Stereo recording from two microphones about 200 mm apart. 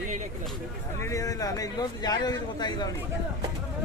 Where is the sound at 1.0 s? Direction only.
15° left (ahead or behind).